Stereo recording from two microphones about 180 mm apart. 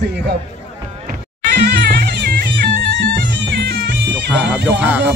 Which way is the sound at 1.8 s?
55° right (ahead or behind).